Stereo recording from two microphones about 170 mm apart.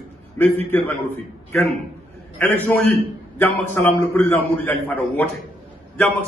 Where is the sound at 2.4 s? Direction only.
10° left (ahead or behind).